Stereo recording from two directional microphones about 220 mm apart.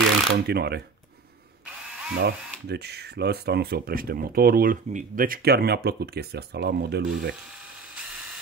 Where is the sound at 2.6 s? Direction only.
50° right (ahead or behind).